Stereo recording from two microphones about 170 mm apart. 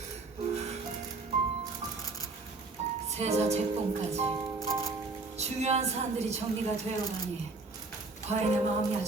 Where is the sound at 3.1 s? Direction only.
40° right (ahead or behind).